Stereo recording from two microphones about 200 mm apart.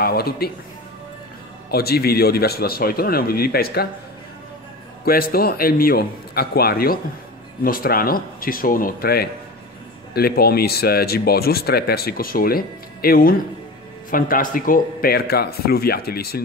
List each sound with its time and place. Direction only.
0.0 s speech: 50° left (ahead or behind)
1.7 s speech: 50° left (ahead or behind)
5.0 s speech: 50° left (ahead or behind)